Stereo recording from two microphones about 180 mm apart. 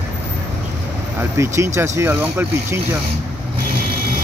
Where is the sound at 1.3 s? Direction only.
15° right (ahead or behind).